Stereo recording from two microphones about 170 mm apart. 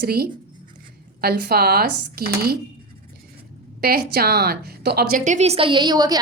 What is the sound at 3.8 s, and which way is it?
Speech, 65° right (ahead or behind).